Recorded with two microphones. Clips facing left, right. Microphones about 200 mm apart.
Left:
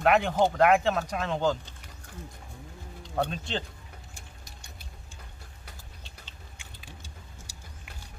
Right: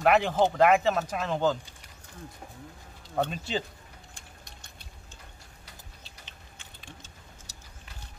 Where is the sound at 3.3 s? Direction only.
5° right (ahead or behind).